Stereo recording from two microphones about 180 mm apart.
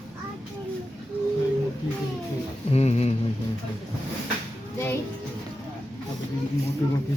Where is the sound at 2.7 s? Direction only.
35° left (ahead or behind).